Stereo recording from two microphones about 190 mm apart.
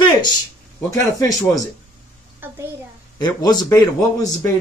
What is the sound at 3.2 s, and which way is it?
Speech, 20° left (ahead or behind).